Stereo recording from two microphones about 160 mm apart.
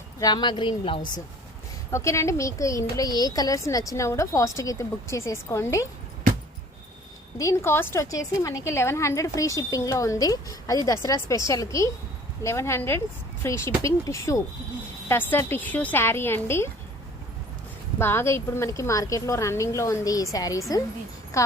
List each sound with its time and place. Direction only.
0.2 s a woman's voice: 25° left (ahead or behind)
1.9 s a woman's voice: 20° left (ahead or behind)
7.3 s a woman's voice: 15° left (ahead or behind)
18.0 s a woman's voice: 15° left (ahead or behind)